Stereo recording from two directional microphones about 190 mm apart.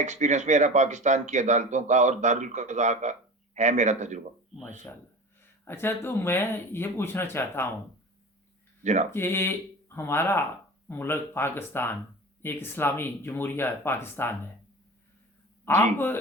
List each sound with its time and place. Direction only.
0.0 s speech: 40° right (ahead or behind)
4.6 s speech: 10° left (ahead or behind)
8.8 s speech: 40° right (ahead or behind)
9.1 s speech: 10° left (ahead or behind)
15.6 s speech: 10° left (ahead or behind)